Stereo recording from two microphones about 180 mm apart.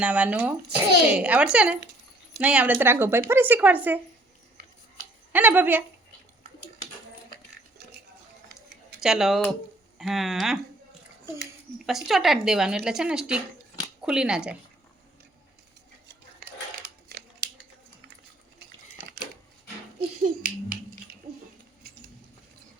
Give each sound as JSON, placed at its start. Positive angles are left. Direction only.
{"t": 0.0, "sound": "speech", "side_deg": -5}
{"t": 5.3, "sound": "speech", "side_deg": -10}
{"t": 9.0, "sound": "speech", "side_deg": -5}
{"t": 11.9, "sound": "speech", "side_deg": 0}
{"t": 16.8, "sound": "crumpling", "side_deg": -60}
{"t": 20.2, "sound": "finger snapping", "side_deg": -55}